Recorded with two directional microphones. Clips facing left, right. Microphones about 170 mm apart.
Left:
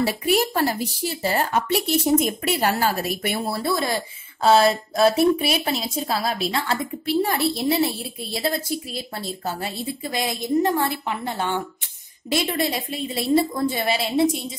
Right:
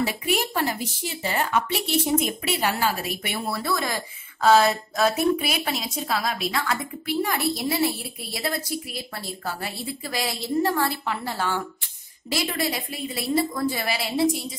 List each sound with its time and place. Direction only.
0.0 s speech: 40° left (ahead or behind)